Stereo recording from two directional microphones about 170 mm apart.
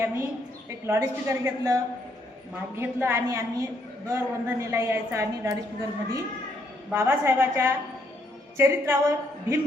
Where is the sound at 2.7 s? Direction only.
15° right (ahead or behind).